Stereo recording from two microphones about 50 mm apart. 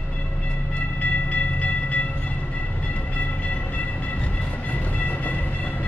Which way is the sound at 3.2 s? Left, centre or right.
Left.